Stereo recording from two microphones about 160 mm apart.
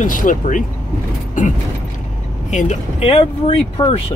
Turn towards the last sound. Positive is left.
turn(degrees=30)  # may be behind; listen again after turning